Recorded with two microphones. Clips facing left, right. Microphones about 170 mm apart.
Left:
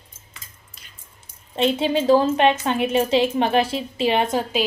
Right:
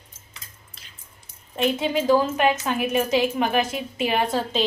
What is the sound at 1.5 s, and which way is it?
A woman's voice, 25° left (ahead or behind).